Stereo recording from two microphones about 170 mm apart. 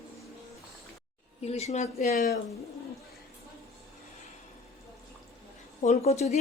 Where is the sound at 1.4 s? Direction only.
40° left (ahead or behind).